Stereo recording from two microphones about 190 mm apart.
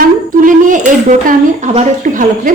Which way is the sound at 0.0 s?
45° right (ahead or behind).